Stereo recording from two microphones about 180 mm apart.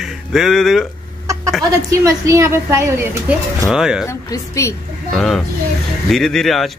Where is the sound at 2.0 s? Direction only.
15° right (ahead or behind).